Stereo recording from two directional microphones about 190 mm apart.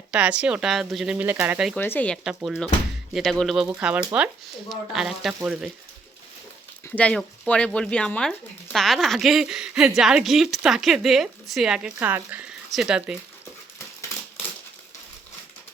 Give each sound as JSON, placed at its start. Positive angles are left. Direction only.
{"t": 0.1, "sound": "speech", "side_deg": -5}
{"t": 1.7, "sound": "speech", "side_deg": 10}
{"t": 2.2, "sound": "speech", "side_deg": 0}
{"t": 6.8, "sound": "speech", "side_deg": 5}